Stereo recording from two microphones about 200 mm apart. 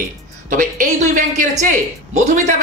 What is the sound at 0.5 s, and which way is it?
A woman's voice, 40° right (ahead or behind).